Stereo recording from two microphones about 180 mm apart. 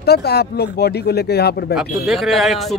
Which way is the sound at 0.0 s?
60° left (ahead or behind).